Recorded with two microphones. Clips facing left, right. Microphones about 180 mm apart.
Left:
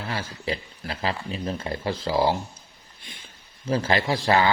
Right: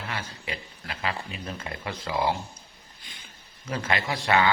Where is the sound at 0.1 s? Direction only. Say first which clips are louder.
Left 8 dB; 30° left (ahead or behind).